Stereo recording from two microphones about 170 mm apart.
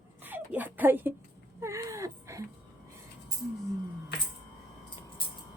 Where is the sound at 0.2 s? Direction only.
10° right (ahead or behind).